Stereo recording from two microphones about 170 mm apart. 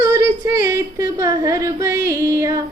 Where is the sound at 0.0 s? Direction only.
15° right (ahead or behind).